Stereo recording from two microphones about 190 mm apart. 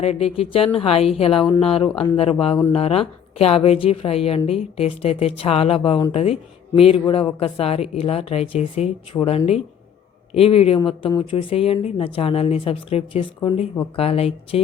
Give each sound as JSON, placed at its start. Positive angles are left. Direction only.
{"t": 0.0, "sound": "a woman's voice", "side_deg": 35}